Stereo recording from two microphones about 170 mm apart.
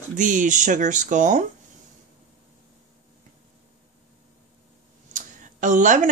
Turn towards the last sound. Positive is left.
turn(degrees=-50)  # may be behind; listen again after turning